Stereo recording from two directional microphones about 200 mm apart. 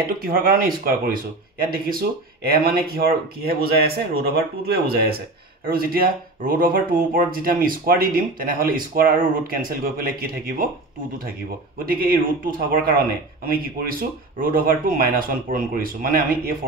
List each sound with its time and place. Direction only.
0.2 s speech: 45° right (ahead or behind)
11.8 s speech: 45° right (ahead or behind)